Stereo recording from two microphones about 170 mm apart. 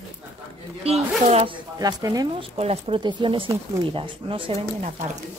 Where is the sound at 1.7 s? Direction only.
20° right (ahead or behind).